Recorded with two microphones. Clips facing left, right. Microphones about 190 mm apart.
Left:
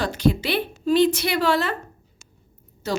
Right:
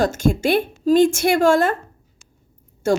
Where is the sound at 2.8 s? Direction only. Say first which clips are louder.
Right 7 dB; 50° right (ahead or behind).